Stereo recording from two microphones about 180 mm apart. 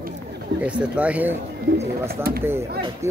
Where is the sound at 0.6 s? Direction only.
5° right (ahead or behind).